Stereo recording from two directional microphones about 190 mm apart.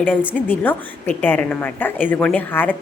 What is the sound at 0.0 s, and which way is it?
A woman's voice, 10° left (ahead or behind).